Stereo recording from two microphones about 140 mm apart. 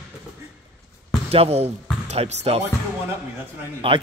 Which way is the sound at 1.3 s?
45° right (ahead or behind).